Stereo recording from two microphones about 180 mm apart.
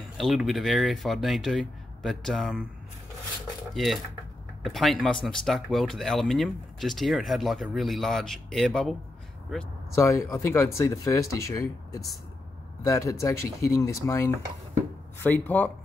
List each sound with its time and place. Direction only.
0.2 s speech: centre (ahead or behind)
3.7 s speech: centre (ahead or behind)
9.9 s speech: 15° left (ahead or behind)